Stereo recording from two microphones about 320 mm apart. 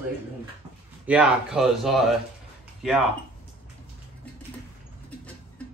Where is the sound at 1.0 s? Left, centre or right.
Centre.